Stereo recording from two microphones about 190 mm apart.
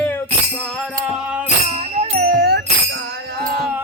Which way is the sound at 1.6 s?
35° right (ahead or behind).